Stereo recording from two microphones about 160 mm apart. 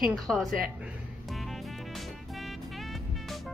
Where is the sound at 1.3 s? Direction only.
Centre (ahead or behind).